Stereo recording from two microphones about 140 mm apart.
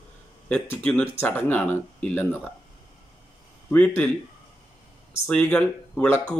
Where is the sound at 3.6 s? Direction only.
10° left (ahead or behind).